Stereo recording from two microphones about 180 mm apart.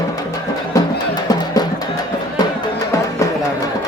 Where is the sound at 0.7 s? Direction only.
20° left (ahead or behind).